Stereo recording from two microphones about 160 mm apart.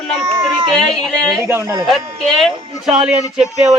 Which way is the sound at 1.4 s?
20° right (ahead or behind).